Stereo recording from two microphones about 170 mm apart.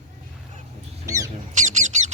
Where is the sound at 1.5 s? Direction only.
45° right (ahead or behind).